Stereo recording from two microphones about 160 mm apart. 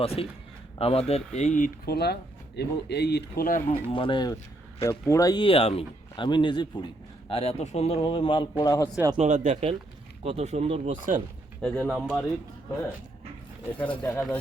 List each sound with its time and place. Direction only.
0.0 s a man's voice: 40° left (ahead or behind)
3.9 s a man's voice: 30° left (ahead or behind)
4.9 s a man's voice: 20° left (ahead or behind); by 8.4 s 35° left (ahead or behind)
8.5 s speech: 20° left (ahead or behind)
9.1 s speech: 45° right (ahead or behind)
11.6 s speech: centre (ahead or behind)
13.7 s speech: 10° left (ahead or behind)